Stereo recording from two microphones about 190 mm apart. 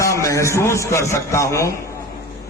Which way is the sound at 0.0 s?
15° left (ahead or behind).